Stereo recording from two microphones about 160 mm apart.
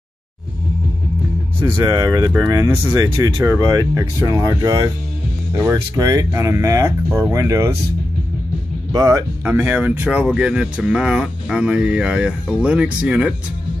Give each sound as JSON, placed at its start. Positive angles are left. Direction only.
{"t": 1.6, "sound": "speech", "side_deg": -20}
{"t": 8.9, "sound": "speech", "side_deg": -20}